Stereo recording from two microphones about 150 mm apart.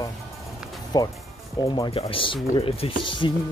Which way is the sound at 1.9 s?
40° left (ahead or behind).